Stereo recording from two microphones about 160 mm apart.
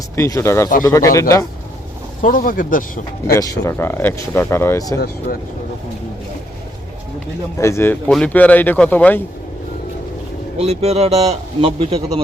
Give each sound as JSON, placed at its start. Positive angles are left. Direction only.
{"t": 0.2, "sound": "speech", "side_deg": 15}
{"t": 2.2, "sound": "speech", "side_deg": 60}
{"t": 3.3, "sound": "speech", "side_deg": 20}
{"t": 4.9, "sound": "speech", "side_deg": 90}
{"t": 7.6, "sound": "speech", "side_deg": 15}
{"t": 10.6, "sound": "a man's voice", "side_deg": -40}